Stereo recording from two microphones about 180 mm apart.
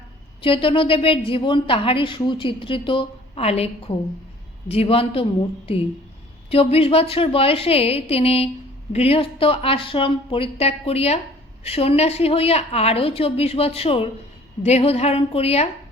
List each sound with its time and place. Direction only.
0.4 s a woman's voice: 30° left (ahead or behind)